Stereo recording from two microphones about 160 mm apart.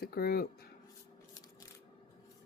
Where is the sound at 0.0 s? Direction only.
75° left (ahead or behind).